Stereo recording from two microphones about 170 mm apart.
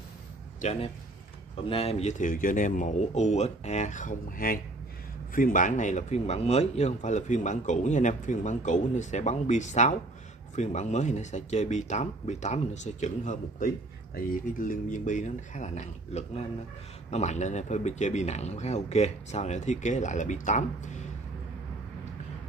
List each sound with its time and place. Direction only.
0.6 s speech: 40° left (ahead or behind)